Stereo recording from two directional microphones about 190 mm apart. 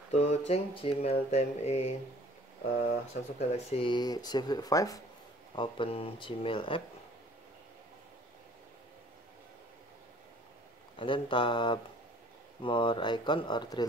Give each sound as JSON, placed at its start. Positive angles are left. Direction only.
{"t": 0.1, "sound": "speech", "side_deg": 35}
{"t": 3.3, "sound": "speech", "side_deg": 30}
{"t": 11.0, "sound": "speech", "side_deg": 25}